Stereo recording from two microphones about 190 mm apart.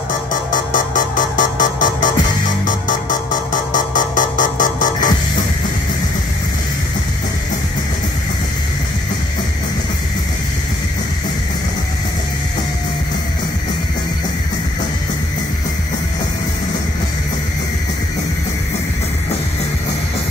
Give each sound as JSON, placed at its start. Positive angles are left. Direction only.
{"t": 0.3, "sound": "music", "side_deg": 45}